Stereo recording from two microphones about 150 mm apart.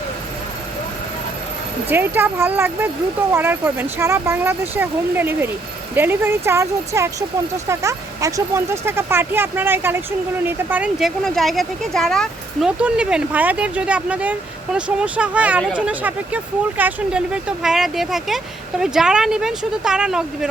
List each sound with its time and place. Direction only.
1.9 s speech: 15° right (ahead or behind)
11.2 s speech: centre (ahead or behind)